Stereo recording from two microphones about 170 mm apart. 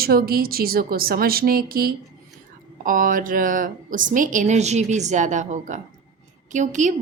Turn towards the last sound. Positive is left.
turn(degrees=-45)  # may be behind; listen again after turning